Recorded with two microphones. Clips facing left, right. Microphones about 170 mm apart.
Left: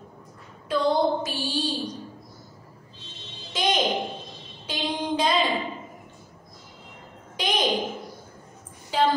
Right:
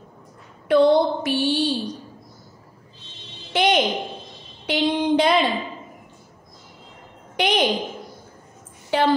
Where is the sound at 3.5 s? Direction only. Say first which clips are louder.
Right 6 dB; 65° right (ahead or behind).